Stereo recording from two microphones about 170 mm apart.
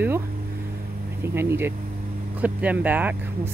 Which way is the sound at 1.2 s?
15° right (ahead or behind).